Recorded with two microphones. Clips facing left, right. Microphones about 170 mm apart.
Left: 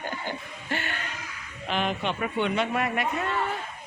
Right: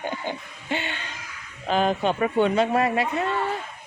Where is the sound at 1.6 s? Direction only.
40° right (ahead or behind).